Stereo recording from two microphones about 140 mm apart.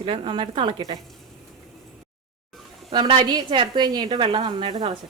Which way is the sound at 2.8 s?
35° right (ahead or behind).